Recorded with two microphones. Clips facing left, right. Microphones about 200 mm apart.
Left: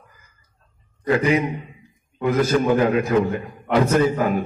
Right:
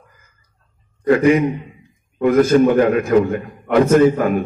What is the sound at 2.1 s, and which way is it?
A man's voice, 55° right (ahead or behind).